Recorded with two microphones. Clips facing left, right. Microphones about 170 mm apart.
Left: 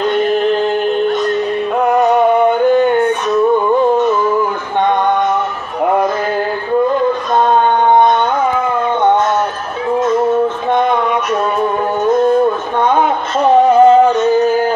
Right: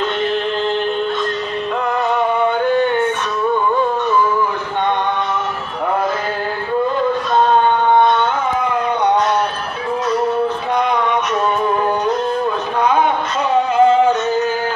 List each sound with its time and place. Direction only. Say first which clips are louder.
1.8 s music: left 8 dB; 45° left (ahead or behind)
12.1 s a sound: left 7 dB; 45° left (ahead or behind)
13.4 s music: left 6 dB; 55° left (ahead or behind)
14.1 s yodeling: left 6 dB; 10° left (ahead or behind)